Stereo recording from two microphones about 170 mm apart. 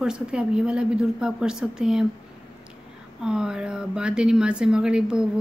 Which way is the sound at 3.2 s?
5° right (ahead or behind).